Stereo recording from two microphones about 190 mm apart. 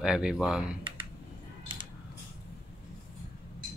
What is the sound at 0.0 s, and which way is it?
Speech, 5° right (ahead or behind).